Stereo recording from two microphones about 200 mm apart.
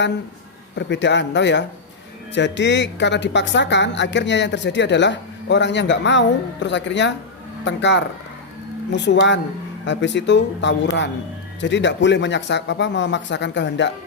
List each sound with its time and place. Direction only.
0.8 s a woman's voice: 60° left (ahead or behind)